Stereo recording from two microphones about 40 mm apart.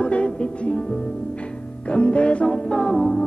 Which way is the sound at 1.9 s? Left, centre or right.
Left.